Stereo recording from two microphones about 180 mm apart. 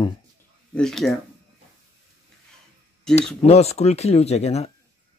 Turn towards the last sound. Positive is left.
turn(degrees=35)  # may be behind; listen again after turning